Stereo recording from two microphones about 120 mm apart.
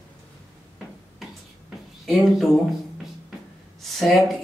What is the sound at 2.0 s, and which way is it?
Speech, centre (ahead or behind).